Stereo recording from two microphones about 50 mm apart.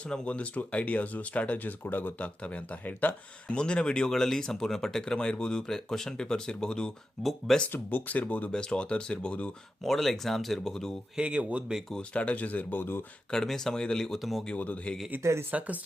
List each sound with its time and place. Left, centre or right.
0.3 s speech: left
1.8 s speech: left
3.5 s speech: centre
7.2 s speech: centre
7.7 s speech: left
8.5 s speech: centre
9.8 s speech: centre
11.2 s speech: right
12.1 s speech: left
13.3 s speech: centre
14.5 s speech: left
15.2 s speech: right
15.5 s speech: right